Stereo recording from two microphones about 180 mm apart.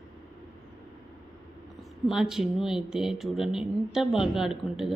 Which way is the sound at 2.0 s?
Centre (ahead or behind).